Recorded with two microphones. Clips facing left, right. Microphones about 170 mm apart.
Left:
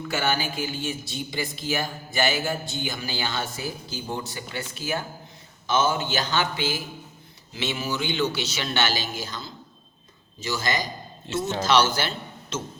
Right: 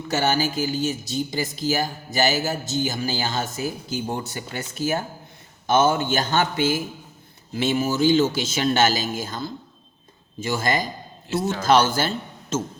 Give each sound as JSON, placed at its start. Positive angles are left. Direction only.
{"t": 0.1, "sound": "a man's voice", "side_deg": -40}
{"t": 11.3, "sound": "a man's voice", "side_deg": 25}
{"t": 11.6, "sound": "a man's voice", "side_deg": -50}